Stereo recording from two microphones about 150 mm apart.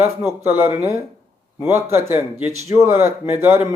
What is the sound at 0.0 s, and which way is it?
Speech, 15° right (ahead or behind).